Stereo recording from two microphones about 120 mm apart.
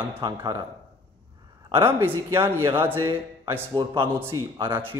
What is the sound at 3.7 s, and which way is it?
Speech, 45° right (ahead or behind).